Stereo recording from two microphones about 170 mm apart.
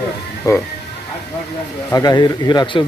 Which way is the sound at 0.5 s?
20° left (ahead or behind).